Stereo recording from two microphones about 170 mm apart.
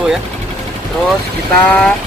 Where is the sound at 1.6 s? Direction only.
10° left (ahead or behind).